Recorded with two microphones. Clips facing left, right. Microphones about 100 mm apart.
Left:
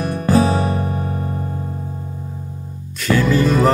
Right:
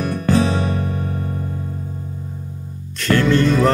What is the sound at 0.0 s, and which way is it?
Music, 40° left (ahead or behind).